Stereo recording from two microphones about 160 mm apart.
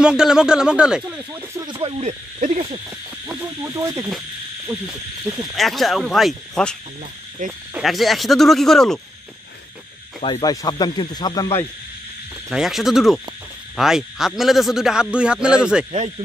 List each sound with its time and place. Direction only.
0.0 s speech: 5° right (ahead or behind)
1.7 s speech: 35° right (ahead or behind)
3.3 s owl: 15° right (ahead or behind)
4.6 s speech: 5° right (ahead or behind)
10.2 s speech: 25° left (ahead or behind)
12.4 s speech: centre (ahead or behind)